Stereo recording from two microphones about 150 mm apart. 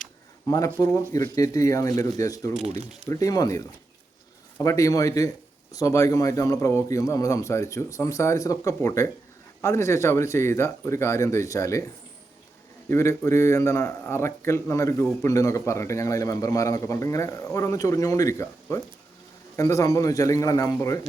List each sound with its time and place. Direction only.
0.4 s a man's voice: 25° left (ahead or behind)
12.9 s a man's voice: 20° left (ahead or behind)